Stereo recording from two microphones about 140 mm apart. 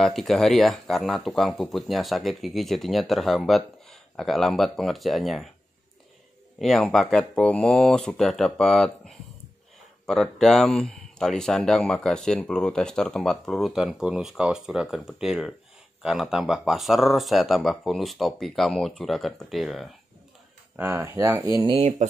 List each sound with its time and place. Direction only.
0.0 s speech: centre (ahead or behind)
6.6 s speech: centre (ahead or behind)
20.7 s speech: 15° right (ahead or behind)
21.7 s speech: 55° right (ahead or behind)